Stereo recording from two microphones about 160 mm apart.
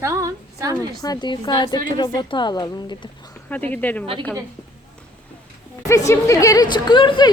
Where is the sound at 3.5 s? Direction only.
10° left (ahead or behind).